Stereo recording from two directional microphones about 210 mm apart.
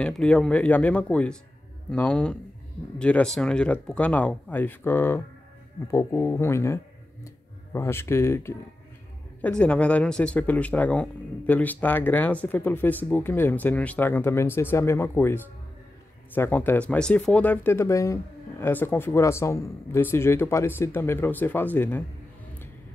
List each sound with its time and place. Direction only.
0.0 s speech: 5° left (ahead or behind)